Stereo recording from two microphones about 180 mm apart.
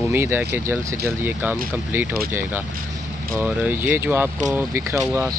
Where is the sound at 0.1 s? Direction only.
15° right (ahead or behind).